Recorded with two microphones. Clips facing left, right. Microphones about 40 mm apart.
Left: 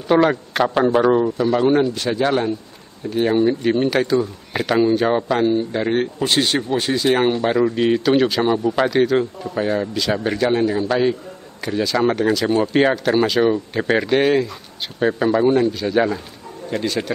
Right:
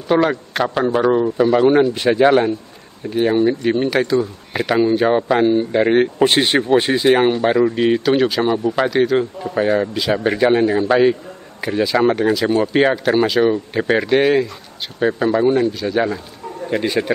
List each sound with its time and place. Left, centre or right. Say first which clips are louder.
0.1 s a man's voice: even; centre
1.4 s speech: right 3 dB; centre
3.1 s speech: right 1 dB; centre; by 7.2 s right
7.2 s a man's voice: right 2 dB; centre
9.4 s a man's voice: right 4 dB; centre
16.7 s speech: right 3 dB; right